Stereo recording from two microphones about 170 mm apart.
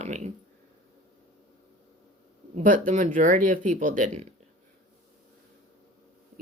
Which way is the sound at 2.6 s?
50° right (ahead or behind).